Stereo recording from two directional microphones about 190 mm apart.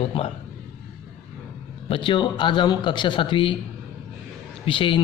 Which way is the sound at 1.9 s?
25° left (ahead or behind).